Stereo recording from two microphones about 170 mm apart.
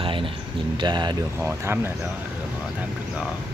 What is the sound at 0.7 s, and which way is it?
Speech, 25° right (ahead or behind).